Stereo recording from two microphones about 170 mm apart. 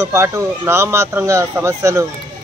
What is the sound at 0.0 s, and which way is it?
Speech, 15° right (ahead or behind).